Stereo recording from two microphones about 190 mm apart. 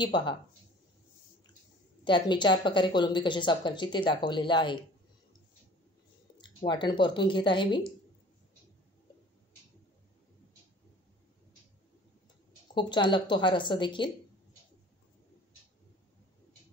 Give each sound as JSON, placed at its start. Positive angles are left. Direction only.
{"t": 0.0, "sound": "speech", "side_deg": 25}
{"t": 2.0, "sound": "speech", "side_deg": 25}
{"t": 6.3, "sound": "speech", "side_deg": 25}
{"t": 12.7, "sound": "speech", "side_deg": 25}